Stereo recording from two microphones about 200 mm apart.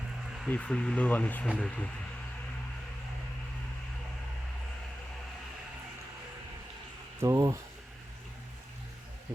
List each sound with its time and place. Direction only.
0.4 s speech: 5° left (ahead or behind)
7.2 s speech: 15° right (ahead or behind)